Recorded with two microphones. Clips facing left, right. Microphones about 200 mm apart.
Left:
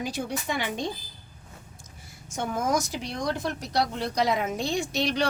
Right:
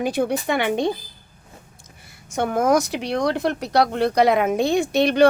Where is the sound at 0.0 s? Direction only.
60° right (ahead or behind).